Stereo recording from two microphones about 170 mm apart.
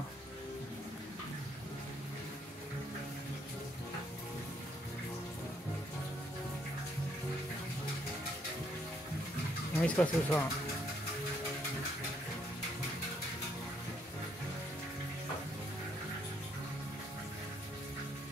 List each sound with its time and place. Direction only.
9.8 s speech: 5° left (ahead or behind)